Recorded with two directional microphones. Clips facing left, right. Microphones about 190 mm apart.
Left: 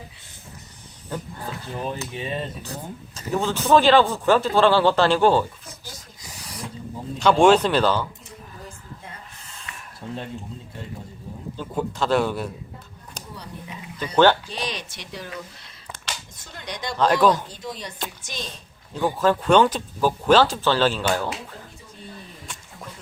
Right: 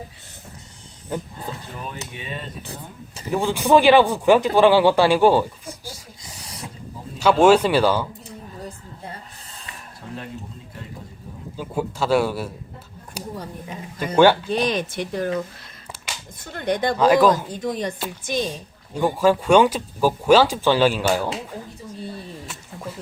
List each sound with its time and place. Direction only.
1.8 s speech: 35° left (ahead or behind)
3.2 s speech: 15° right (ahead or behind)
7.2 s speech: 5° right (ahead or behind)
8.6 s a sound: 35° right (ahead or behind)
11.5 s speech: 10° right (ahead or behind)
13.3 s speech: 45° right (ahead or behind)
16.4 s speech: 55° right (ahead or behind)
17.0 s speech: 5° right (ahead or behind)
17.5 s speech: 50° right (ahead or behind)
18.4 s speech: 10° right (ahead or behind)
22.4 s a sound: 5° right (ahead or behind)